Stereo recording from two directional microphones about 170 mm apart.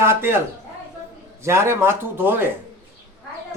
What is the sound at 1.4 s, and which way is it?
Speech, 15° right (ahead or behind).